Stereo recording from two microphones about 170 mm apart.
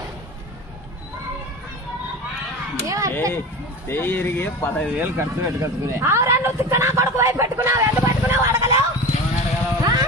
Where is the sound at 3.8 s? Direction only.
10° left (ahead or behind).